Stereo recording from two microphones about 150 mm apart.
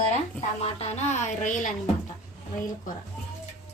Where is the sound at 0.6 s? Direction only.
45° left (ahead or behind).